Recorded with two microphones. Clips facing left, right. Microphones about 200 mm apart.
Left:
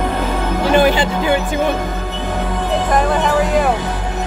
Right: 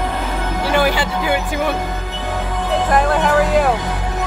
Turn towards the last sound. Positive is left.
turn(degrees=0)  # may be behind; listen again after turning